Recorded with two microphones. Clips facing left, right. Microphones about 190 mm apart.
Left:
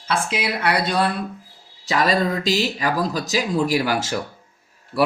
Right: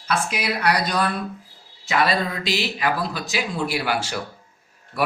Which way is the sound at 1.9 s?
40° left (ahead or behind).